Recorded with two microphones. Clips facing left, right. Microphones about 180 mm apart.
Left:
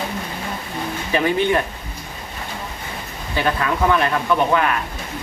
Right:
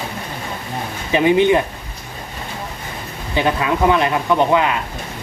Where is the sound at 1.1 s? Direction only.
15° right (ahead or behind).